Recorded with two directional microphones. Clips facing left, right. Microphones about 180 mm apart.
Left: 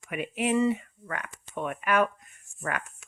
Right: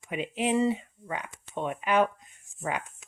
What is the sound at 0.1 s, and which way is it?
Speech, 20° right (ahead or behind).